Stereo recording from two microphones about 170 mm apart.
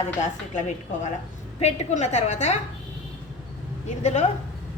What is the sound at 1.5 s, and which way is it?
A woman's voice, 40° left (ahead or behind).